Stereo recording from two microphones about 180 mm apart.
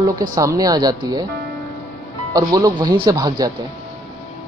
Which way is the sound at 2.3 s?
20° right (ahead or behind).